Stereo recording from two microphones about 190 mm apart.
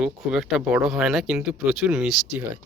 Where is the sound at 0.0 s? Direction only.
5° right (ahead or behind).